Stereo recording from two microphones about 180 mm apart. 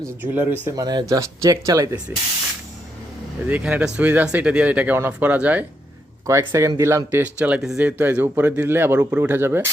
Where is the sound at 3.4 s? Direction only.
5° right (ahead or behind).